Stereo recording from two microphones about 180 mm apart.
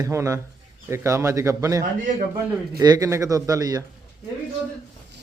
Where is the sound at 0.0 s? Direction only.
15° right (ahead or behind).